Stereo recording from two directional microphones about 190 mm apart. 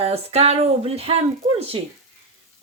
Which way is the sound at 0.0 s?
30° right (ahead or behind).